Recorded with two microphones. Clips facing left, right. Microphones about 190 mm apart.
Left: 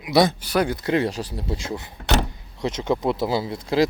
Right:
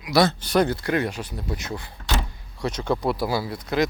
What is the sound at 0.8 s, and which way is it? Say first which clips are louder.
Speech: left 3 dB; 25° left (ahead or behind).